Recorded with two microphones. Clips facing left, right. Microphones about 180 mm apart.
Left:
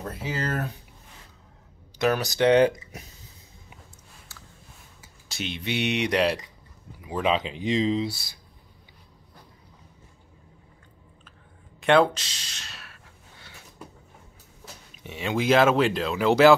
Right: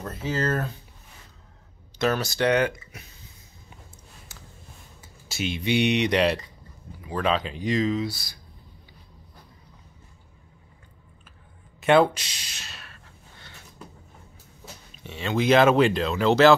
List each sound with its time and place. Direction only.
0.0 s speech: 10° left (ahead or behind)
2.0 s speech: 15° left (ahead or behind)
4.3 s a sound: 20° right (ahead or behind)
5.3 s speech: 5° right (ahead or behind); by 8.2 s 30° left (ahead or behind)
11.8 s speech: centre (ahead or behind)
12.2 s a sound: 10° right (ahead or behind); by 13.6 s 5° left (ahead or behind)
15.0 s speech: 15° left (ahead or behind)